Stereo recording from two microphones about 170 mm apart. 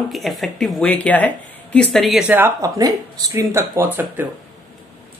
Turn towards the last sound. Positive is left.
turn(degrees=-10)  # may be behind; listen again after turning